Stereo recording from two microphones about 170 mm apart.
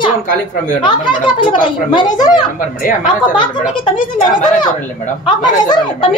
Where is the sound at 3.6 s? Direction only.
55° left (ahead or behind).